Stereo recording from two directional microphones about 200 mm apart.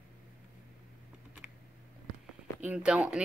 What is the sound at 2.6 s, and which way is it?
Speech, 5° right (ahead or behind).